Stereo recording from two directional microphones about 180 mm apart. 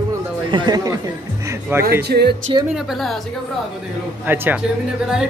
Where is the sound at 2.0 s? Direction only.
65° right (ahead or behind).